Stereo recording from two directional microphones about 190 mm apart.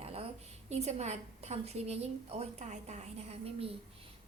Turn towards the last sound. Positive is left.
turn(degrees=-30)  # may be behind; listen again after turning